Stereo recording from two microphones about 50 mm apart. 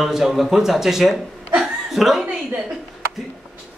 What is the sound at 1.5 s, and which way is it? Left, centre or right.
Chuckle, centre.